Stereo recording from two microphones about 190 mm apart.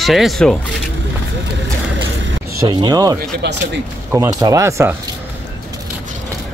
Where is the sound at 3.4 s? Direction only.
65° right (ahead or behind).